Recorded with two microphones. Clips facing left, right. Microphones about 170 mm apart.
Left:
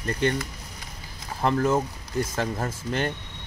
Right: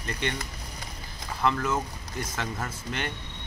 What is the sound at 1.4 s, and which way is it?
Speech, 40° left (ahead or behind).